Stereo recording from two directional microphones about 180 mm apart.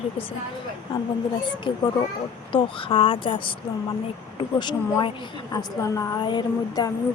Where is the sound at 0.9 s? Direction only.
25° left (ahead or behind).